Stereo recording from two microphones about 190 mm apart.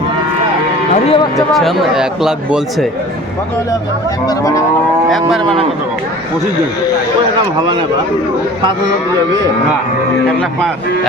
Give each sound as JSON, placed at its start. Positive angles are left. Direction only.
{"t": 0.9, "sound": "speech", "side_deg": 35}
{"t": 1.4, "sound": "speech", "side_deg": 0}
{"t": 4.3, "sound": "moo", "side_deg": 15}
{"t": 5.0, "sound": "speech", "side_deg": 0}